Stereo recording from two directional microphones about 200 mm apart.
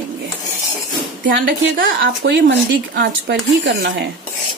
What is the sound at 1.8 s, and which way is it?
Speech, 70° right (ahead or behind).